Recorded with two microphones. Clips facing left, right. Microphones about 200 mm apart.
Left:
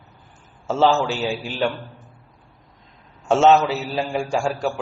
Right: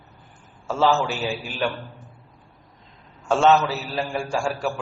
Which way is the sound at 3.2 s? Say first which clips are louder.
Left 3 dB; 20° left (ahead or behind).